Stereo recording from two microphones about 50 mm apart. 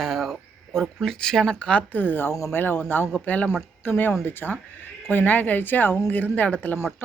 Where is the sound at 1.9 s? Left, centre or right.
Left.